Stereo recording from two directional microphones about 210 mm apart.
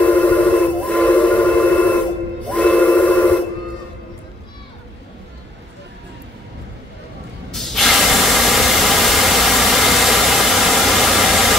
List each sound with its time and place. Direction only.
0.0 s steam whistle: 5° left (ahead or behind)
2.4 s a sound: 5° left (ahead or behind)
7.5 s spray: centre (ahead or behind)